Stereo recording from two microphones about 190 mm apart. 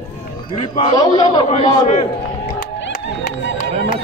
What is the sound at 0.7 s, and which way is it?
A man's voice, 25° left (ahead or behind).